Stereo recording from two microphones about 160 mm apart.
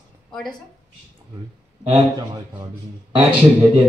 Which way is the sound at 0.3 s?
5° left (ahead or behind).